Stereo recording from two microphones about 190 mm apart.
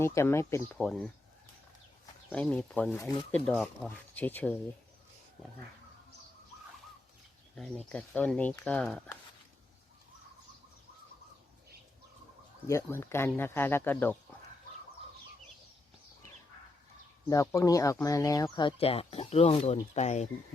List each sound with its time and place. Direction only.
0.0 s speech: 15° left (ahead or behind)
0.8 s speech: centre (ahead or behind)
2.3 s speech: 5° left (ahead or behind)
7.9 s speech: 10° left (ahead or behind)
12.6 s speech: 15° left (ahead or behind)
17.2 s speech: 15° left (ahead or behind); by 20.2 s 35° left (ahead or behind)